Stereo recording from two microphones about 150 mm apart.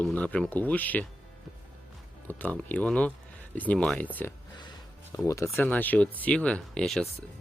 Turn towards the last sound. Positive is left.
turn(degrees=5)  # may be behind; listen again after turning